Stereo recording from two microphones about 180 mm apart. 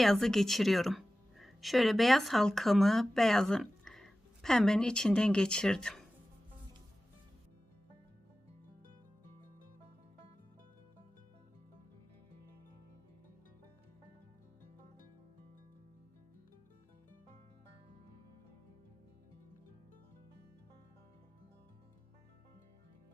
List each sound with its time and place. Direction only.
0.0 s speech: centre (ahead or behind)